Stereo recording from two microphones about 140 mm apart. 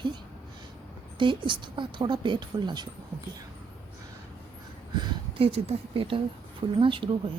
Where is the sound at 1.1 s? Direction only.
35° right (ahead or behind).